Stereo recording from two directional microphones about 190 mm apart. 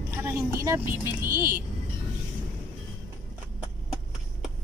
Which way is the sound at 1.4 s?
50° right (ahead or behind).